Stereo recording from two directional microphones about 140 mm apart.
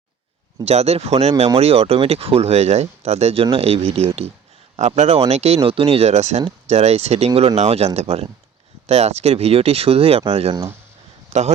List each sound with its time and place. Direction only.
0.6 s speech: 50° right (ahead or behind)
11.3 s speech: 55° right (ahead or behind)